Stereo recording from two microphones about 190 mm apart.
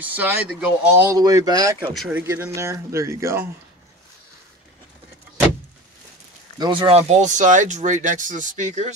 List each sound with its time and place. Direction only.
0.0 s speech: 10° right (ahead or behind)
2.0 s speech: 5° right (ahead or behind)
6.6 s speech: 25° right (ahead or behind)